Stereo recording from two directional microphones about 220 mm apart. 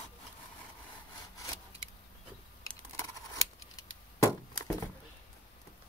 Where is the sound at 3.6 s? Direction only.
15° left (ahead or behind).